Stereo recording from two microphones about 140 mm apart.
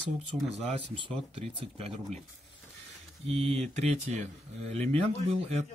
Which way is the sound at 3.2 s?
45° right (ahead or behind).